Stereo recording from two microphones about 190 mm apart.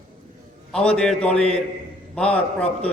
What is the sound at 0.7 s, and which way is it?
A man's voice, 5° left (ahead or behind).